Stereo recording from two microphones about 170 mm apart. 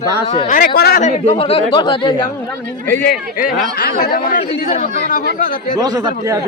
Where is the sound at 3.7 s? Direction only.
60° left (ahead or behind).